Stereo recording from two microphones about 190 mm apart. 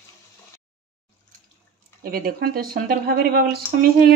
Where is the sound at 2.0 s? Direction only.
50° right (ahead or behind).